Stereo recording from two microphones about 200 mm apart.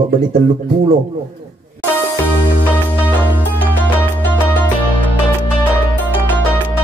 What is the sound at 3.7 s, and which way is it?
Music, 10° left (ahead or behind).